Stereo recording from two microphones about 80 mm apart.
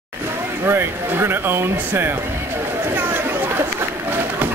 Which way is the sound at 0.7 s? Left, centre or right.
Right.